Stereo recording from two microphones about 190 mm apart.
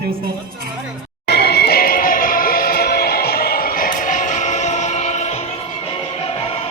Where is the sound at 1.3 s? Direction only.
60° left (ahead or behind); by 5.4 s 35° left (ahead or behind).